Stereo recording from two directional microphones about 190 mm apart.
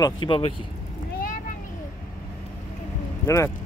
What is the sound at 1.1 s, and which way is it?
Vehicle, 45° left (ahead or behind).